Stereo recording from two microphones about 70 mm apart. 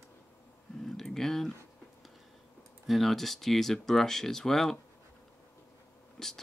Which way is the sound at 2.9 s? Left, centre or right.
Centre.